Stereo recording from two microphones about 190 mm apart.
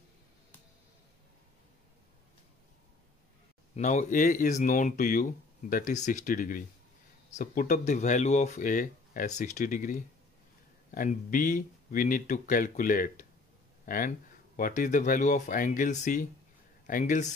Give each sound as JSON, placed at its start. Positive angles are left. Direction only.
{"t": 3.7, "sound": "speech", "side_deg": 40}